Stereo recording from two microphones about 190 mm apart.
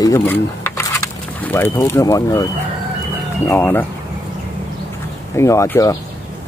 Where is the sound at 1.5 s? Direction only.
10° left (ahead or behind).